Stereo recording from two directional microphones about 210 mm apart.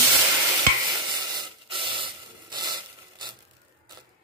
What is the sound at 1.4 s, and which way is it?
Mechanisms, 25° right (ahead or behind).